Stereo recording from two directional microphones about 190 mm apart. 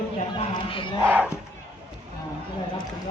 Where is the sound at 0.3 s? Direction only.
25° left (ahead or behind).